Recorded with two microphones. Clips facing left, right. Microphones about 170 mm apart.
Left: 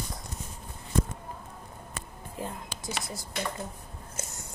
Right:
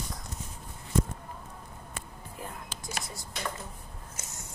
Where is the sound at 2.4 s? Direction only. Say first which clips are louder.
Left 5 dB; 25° left (ahead or behind).